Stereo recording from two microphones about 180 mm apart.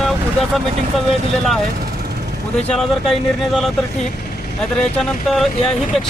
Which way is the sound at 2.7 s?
Centre (ahead or behind).